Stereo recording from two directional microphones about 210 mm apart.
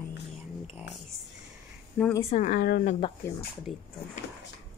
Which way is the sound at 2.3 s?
35° left (ahead or behind).